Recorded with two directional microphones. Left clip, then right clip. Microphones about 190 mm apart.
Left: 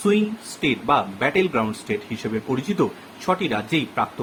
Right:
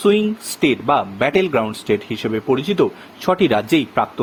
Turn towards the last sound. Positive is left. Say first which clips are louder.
# right 6 dB
turn(degrees=-50)  # may be behind; listen again after turning